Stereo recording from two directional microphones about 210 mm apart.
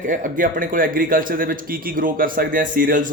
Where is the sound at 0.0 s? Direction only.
35° right (ahead or behind).